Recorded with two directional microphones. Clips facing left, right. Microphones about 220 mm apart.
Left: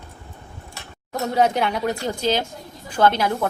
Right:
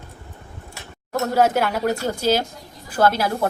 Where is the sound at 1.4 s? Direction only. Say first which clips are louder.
Right 1 dB; 5° right (ahead or behind).